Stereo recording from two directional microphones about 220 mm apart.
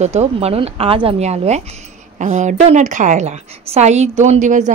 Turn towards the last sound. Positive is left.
turn(degrees=-35)  # may be behind; listen again after turning